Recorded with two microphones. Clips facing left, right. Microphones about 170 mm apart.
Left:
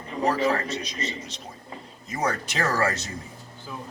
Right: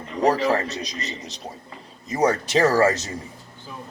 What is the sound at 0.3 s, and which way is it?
Speech, 40° right (ahead or behind).